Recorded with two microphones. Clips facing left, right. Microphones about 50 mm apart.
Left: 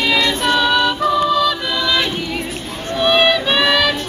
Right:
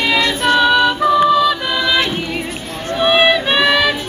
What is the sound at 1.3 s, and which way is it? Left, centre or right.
Choir, centre.